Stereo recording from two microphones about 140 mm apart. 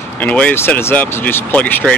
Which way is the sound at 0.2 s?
10° left (ahead or behind).